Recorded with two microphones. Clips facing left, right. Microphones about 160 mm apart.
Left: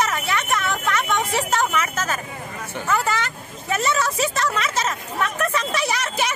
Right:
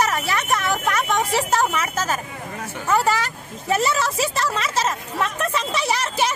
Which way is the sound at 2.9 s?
35° right (ahead or behind).